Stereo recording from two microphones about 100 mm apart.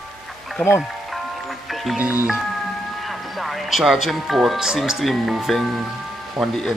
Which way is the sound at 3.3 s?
Centre (ahead or behind).